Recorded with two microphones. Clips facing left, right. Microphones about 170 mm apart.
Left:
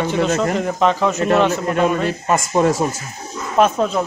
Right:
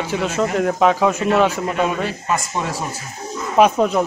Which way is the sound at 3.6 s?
15° right (ahead or behind).